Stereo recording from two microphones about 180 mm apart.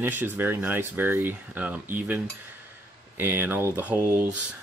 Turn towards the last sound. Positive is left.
turn(degrees=-10)  # may be behind; listen again after turning